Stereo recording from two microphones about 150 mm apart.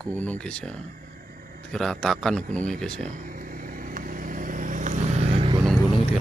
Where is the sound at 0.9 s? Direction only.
65° right (ahead or behind).